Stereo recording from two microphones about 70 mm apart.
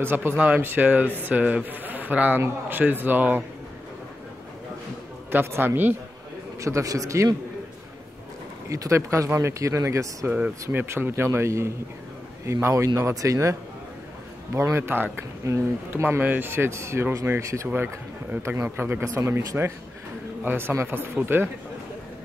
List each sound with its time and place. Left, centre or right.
0.0 s speech: right
5.3 s speech: right
6.6 s speech: right
8.6 s speech: right
10.2 s speech: right
11.2 s speech: right
15.4 s speech: right
15.9 s speech: right
18.6 s speech: right